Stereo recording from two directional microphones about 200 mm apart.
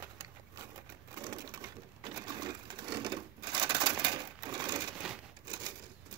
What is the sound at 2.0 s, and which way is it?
Sewing machine, 20° right (ahead or behind).